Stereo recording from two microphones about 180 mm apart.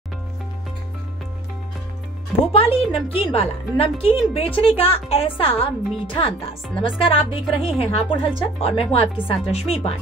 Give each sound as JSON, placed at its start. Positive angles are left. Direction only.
{"t": 2.5, "sound": "a woman's voice", "side_deg": 30}